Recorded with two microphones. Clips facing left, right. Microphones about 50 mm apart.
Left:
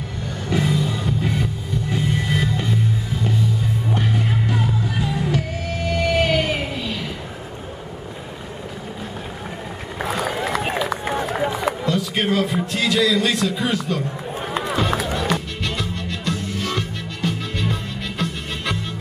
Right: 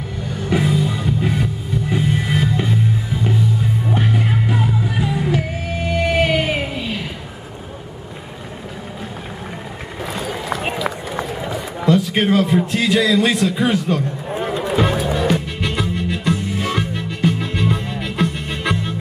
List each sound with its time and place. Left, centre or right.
0.5 s music: centre
3.9 s music: centre
11.8 s a man's voice: centre
15.1 s music: centre